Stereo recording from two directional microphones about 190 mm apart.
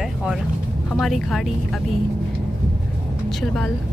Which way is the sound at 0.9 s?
Centre (ahead or behind).